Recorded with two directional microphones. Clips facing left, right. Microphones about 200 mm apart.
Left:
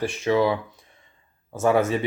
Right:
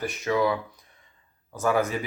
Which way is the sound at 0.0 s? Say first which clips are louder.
Left 4 dB; 30° left (ahead or behind).